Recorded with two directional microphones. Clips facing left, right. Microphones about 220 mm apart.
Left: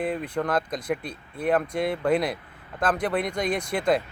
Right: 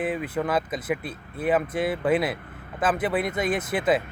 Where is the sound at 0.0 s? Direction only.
5° right (ahead or behind).